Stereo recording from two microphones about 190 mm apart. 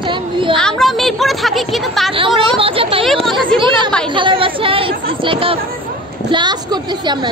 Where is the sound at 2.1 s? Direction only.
30° right (ahead or behind).